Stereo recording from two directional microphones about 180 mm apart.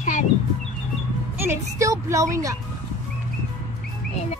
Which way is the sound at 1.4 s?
15° right (ahead or behind).